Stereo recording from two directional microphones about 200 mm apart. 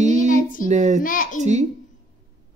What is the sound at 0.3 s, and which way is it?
Child singing, 40° left (ahead or behind).